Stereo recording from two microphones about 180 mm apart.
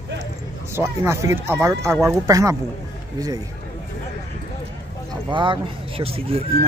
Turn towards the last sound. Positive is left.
turn(degrees=-30)  # may be behind; listen again after turning